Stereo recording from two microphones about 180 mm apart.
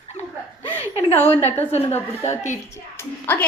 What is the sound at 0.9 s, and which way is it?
A woman's voice, 30° left (ahead or behind).